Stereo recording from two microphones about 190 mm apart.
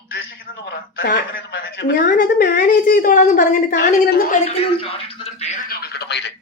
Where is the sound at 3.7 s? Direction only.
55° left (ahead or behind).